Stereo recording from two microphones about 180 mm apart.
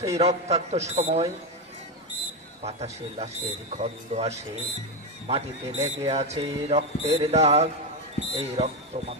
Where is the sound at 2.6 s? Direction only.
35° right (ahead or behind).